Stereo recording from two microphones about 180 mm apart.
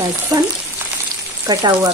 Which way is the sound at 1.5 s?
20° right (ahead or behind).